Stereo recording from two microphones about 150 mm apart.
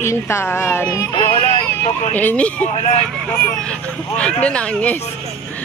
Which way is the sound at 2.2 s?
10° left (ahead or behind).